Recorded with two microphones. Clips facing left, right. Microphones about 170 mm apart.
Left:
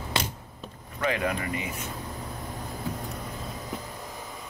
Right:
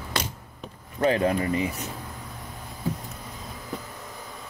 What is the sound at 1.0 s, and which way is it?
Speech, 30° right (ahead or behind).